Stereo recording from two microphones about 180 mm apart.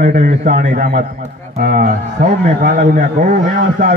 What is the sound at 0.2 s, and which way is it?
A man's voice, 40° right (ahead or behind).